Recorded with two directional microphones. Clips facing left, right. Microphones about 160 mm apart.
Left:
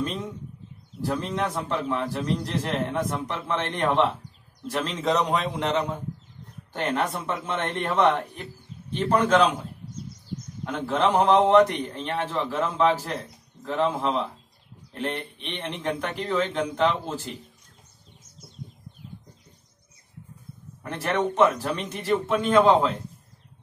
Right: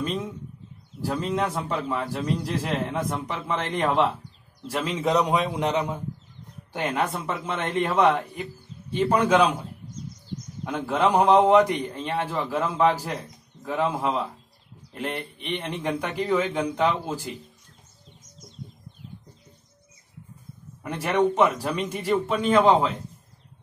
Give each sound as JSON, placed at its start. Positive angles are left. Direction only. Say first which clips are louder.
{"t": 1.0, "sound": "a man's voice", "louder": "right 1 dB", "side_deg": -10}
{"t": 10.6, "sound": "a man's voice", "louder": "right 1 dB", "side_deg": -10}
{"t": 20.8, "sound": "a man's voice", "louder": "right 3 dB", "side_deg": -10}